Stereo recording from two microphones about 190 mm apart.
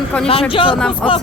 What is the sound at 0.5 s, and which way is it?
Speech, 25° left (ahead or behind).